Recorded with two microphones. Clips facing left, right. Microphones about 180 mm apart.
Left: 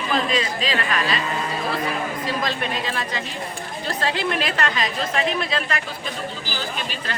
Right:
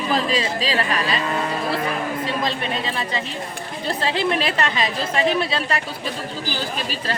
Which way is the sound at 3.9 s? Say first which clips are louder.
Right 3 dB; 25° right (ahead or behind).